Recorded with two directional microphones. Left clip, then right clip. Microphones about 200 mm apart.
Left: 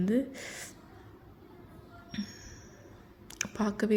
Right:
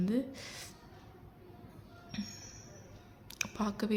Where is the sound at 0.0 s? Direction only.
15° left (ahead or behind).